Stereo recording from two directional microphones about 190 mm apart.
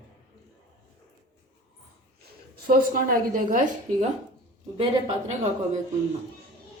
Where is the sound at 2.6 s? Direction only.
50° right (ahead or behind).